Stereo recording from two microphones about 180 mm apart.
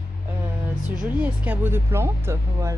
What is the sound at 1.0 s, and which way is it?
Speech, 10° right (ahead or behind).